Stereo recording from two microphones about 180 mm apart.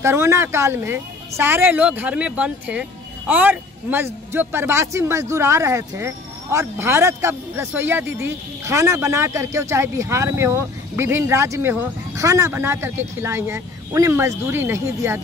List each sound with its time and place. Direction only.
0.0 s speech: 15° right (ahead or behind)